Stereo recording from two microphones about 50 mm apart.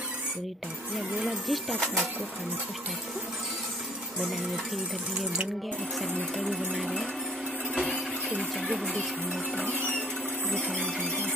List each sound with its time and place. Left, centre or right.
1.5 s speech: centre
6.3 s speech: centre
8.4 s speech: centre
9.6 s music: left
10.5 s music: centre